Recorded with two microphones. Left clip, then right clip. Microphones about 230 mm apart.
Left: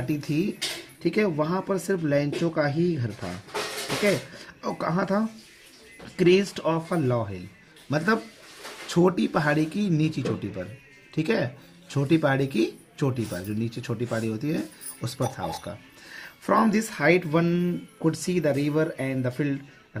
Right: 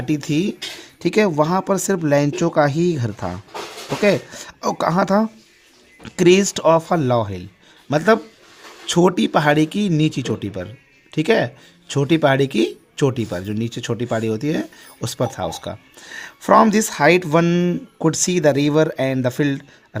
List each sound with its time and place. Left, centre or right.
0.1 s speech: right